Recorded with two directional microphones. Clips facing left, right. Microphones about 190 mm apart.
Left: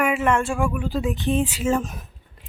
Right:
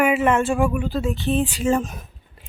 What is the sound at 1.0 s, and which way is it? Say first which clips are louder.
Speech: left 1 dB; 15° left (ahead or behind).